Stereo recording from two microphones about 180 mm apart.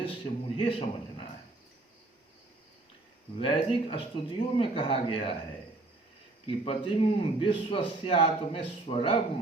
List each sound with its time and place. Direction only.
0.0 s a man's voice: 30° left (ahead or behind)
3.3 s a man's voice: 30° left (ahead or behind)
6.7 s a man's voice: 30° left (ahead or behind)